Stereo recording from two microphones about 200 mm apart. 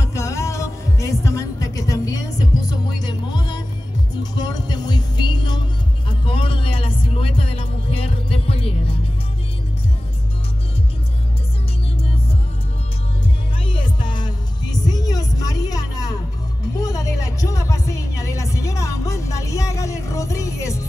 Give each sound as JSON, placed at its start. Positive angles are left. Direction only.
{"t": 0.0, "sound": "music", "side_deg": 15}
{"t": 13.7, "sound": "music", "side_deg": 25}